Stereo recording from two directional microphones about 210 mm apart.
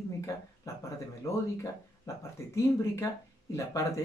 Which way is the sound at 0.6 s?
15° left (ahead or behind).